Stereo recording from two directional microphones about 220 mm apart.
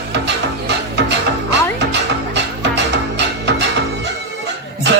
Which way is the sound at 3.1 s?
50° right (ahead or behind).